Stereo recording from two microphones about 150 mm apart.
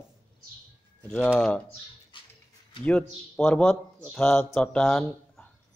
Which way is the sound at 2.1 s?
35° left (ahead or behind).